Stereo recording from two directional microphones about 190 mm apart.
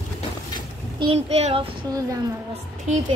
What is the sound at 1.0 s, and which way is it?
Speech, 30° right (ahead or behind).